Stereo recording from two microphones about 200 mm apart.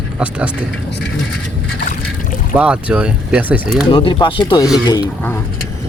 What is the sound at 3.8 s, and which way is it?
Speech, 25° left (ahead or behind).